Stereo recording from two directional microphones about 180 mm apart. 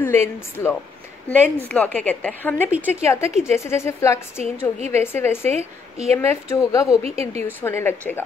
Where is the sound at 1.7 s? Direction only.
10° left (ahead or behind).